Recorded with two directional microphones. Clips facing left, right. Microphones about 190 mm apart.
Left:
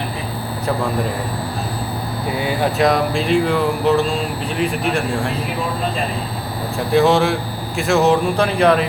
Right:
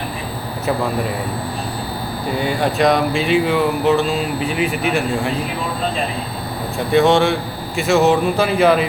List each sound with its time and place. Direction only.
2.4 s speech: centre (ahead or behind)
6.7 s speech: centre (ahead or behind)